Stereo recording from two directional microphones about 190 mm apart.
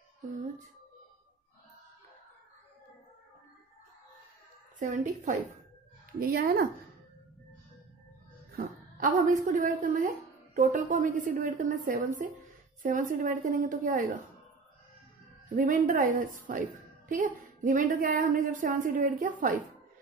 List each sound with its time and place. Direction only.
4.7 s a woman's voice: 45° right (ahead or behind)
8.5 s a woman's voice: 45° right (ahead or behind)
15.5 s a woman's voice: 45° right (ahead or behind)